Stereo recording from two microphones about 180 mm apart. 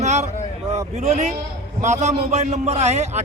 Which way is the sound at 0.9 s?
40° right (ahead or behind).